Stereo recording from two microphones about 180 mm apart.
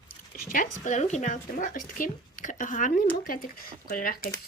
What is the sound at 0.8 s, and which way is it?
A woman's voice, 40° left (ahead or behind).